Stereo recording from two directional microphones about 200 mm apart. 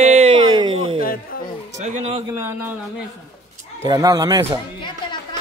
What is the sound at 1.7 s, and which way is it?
Speech, 35° right (ahead or behind).